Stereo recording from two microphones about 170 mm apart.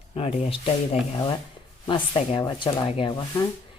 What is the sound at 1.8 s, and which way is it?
Rub, 30° left (ahead or behind).